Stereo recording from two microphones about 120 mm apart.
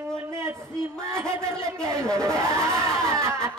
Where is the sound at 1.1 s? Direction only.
25° right (ahead or behind).